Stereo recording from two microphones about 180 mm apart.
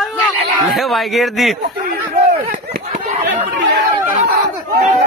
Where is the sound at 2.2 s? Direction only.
40° right (ahead or behind).